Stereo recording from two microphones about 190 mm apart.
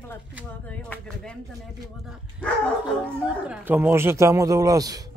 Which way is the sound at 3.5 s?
10° right (ahead or behind).